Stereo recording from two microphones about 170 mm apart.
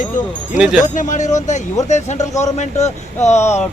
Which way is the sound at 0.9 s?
45° left (ahead or behind).